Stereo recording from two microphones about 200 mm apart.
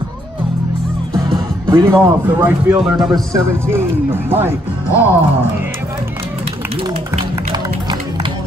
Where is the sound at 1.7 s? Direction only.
10° right (ahead or behind).